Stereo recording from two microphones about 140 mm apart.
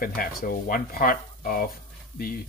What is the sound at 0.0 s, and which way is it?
Speech, 90° left.